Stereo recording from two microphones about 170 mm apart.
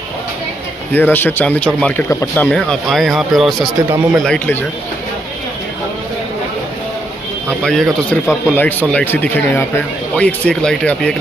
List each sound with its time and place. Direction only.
0.9 s speech: 10° left (ahead or behind)
7.4 s speech: 5° left (ahead or behind)
8.5 s speech: 10° left (ahead or behind)